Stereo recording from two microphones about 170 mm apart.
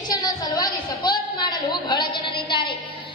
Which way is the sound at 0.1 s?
25° left (ahead or behind).